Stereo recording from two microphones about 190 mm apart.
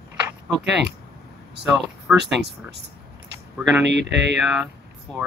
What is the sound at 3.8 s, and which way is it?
Speech, 65° right (ahead or behind).